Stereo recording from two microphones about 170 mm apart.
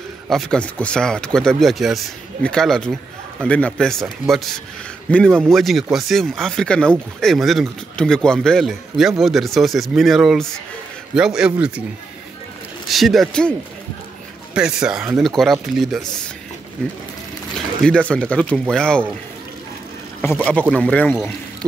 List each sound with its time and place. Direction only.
0.3 s a man's voice: 5° left (ahead or behind)
12.8 s speech: centre (ahead or behind)
14.5 s speech: 5° right (ahead or behind)
17.8 s speech: 5° left (ahead or behind)
20.2 s speech: 10° left (ahead or behind)